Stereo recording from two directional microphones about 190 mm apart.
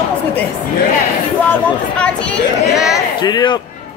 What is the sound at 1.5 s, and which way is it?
Speech, 5° left (ahead or behind).